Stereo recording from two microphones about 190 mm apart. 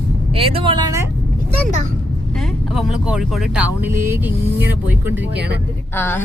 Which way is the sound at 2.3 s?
Centre (ahead or behind).